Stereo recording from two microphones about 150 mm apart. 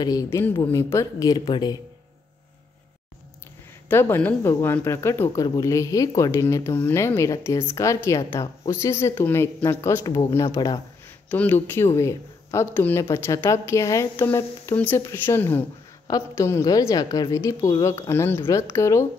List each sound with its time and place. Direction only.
0.0 s a woman's voice: 25° left (ahead or behind)
3.9 s a woman's voice: 15° left (ahead or behind)
11.2 s a woman's voice: 10° left (ahead or behind)